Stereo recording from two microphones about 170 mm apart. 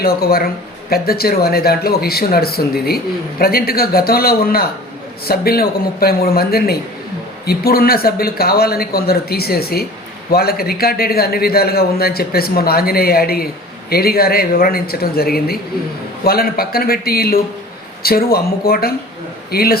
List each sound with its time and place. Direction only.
0.0 s speech: 60° left (ahead or behind)